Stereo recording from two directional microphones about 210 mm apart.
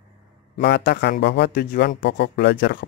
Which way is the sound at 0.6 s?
50° left (ahead or behind).